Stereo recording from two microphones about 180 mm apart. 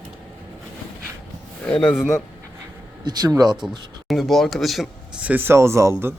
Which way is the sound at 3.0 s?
20° right (ahead or behind).